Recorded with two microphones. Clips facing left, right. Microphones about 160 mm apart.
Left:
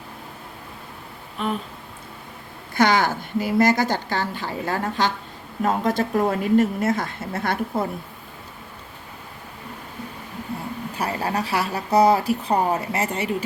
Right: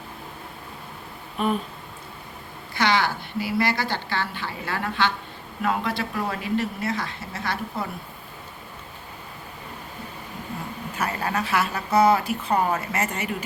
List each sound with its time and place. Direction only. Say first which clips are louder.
2.7 s a woman's voice: left 4 dB; 45° left (ahead or behind)
10.9 s speech: left 1 dB; 30° left (ahead or behind)